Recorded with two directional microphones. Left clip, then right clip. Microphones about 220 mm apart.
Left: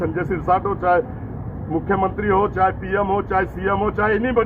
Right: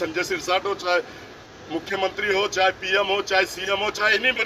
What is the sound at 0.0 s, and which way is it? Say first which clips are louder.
Speech: left 2 dB; 35° right (ahead or behind).